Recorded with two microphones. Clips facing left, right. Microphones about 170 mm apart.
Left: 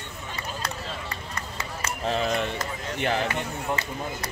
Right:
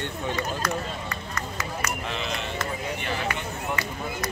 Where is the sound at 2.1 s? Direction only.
40° left (ahead or behind).